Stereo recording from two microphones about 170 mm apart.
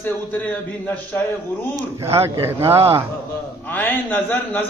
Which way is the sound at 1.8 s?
15° right (ahead or behind).